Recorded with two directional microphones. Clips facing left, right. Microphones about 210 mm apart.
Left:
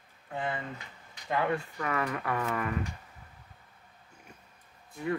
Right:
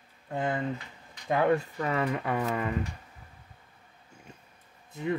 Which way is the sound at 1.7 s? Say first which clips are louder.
Right 3 dB; 25° right (ahead or behind).